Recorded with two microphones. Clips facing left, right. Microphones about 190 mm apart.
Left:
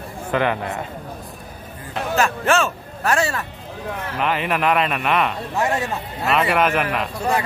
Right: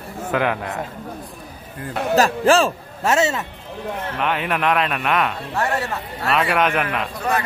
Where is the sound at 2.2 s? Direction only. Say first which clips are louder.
Right 4 dB; 35° right (ahead or behind).